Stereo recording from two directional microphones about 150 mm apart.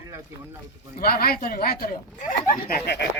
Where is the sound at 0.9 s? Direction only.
80° left.